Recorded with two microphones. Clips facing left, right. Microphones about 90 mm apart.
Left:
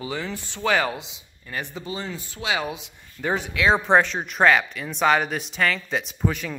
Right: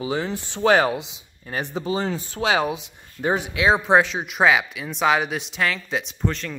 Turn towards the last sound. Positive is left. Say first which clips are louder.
# even
turn(degrees=5)  # may be behind; listen again after turning